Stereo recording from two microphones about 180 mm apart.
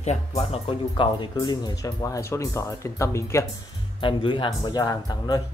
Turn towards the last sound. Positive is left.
turn(degrees=20)  # may be behind; listen again after turning